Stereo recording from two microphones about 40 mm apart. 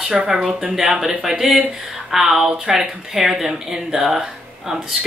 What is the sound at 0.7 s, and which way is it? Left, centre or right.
Speech, centre.